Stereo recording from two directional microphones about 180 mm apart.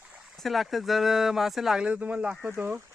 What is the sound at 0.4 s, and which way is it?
Speech, centre (ahead or behind).